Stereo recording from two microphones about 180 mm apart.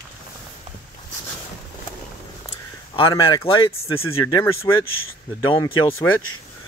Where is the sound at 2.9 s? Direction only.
30° left (ahead or behind).